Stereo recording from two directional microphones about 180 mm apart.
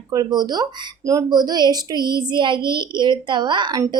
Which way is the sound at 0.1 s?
20° right (ahead or behind).